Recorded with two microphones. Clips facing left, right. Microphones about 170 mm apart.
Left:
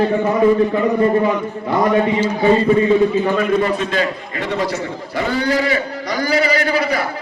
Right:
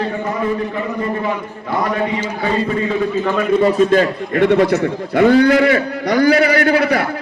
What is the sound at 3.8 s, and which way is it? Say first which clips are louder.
A man's voice: right 7 dB; 45° right (ahead or behind).